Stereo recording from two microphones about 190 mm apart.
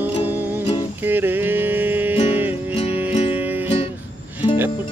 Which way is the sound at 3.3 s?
10° right (ahead or behind).